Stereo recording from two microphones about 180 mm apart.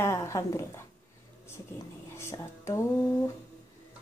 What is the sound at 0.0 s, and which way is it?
Speech, 15° left (ahead or behind).